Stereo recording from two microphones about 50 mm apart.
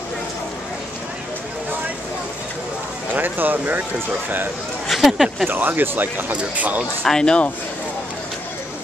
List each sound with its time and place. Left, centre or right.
3.2 s speech: right
4.8 s speech: centre
5.5 s speech: right
6.3 s speech: right
7.1 s speech: centre